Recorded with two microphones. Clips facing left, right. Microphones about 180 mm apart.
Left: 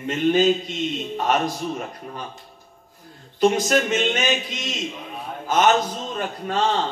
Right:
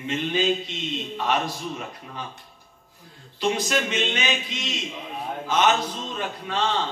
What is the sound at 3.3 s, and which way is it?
A man's voice, 45° left (ahead or behind).